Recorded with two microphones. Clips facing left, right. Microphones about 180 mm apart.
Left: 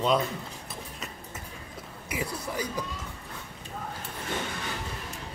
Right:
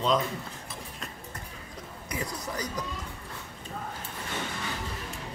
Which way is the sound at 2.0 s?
10° left (ahead or behind).